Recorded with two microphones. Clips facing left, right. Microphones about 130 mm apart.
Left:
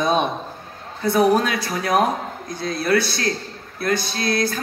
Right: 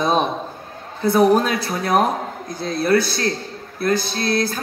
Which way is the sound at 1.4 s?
35° right (ahead or behind).